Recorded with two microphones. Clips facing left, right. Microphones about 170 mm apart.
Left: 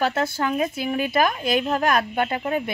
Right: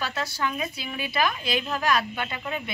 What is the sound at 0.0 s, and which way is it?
Speech, 50° left (ahead or behind).